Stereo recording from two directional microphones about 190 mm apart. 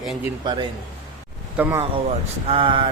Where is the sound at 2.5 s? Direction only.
25° right (ahead or behind).